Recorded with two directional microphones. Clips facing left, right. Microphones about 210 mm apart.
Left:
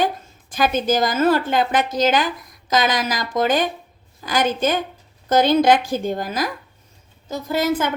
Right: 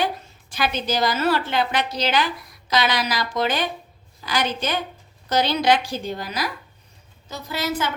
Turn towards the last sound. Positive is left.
turn(degrees=50)  # may be behind; listen again after turning